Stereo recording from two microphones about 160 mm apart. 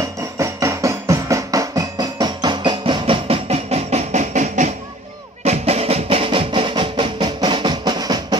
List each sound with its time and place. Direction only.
0.4 s music: 20° right (ahead or behind)